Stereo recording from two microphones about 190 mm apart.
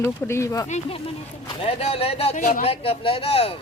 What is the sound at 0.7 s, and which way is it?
Speech, 30° left (ahead or behind).